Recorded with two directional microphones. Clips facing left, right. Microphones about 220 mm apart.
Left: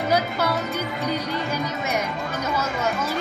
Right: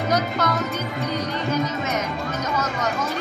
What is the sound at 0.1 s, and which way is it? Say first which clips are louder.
Speech: even; 10° left (ahead or behind).